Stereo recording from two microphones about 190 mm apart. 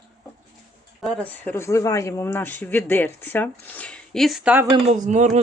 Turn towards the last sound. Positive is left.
turn(degrees=-40)  # may be behind; listen again after turning